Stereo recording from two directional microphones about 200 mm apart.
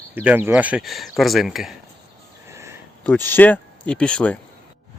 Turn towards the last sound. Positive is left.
turn(degrees=5)  # may be behind; listen again after turning